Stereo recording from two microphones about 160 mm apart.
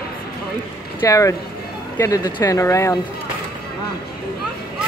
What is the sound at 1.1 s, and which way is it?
Speech, 20° left (ahead or behind).